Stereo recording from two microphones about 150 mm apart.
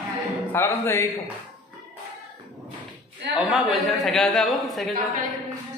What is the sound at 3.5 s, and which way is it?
A man's voice, centre (ahead or behind).